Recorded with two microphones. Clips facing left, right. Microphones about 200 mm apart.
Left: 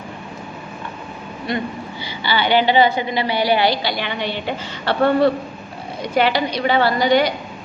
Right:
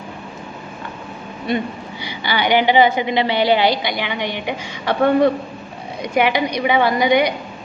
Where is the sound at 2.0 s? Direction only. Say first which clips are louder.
Right 1 dB; 15° right (ahead or behind).